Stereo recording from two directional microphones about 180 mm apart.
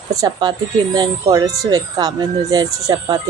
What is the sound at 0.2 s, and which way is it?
Speech, 25° right (ahead or behind).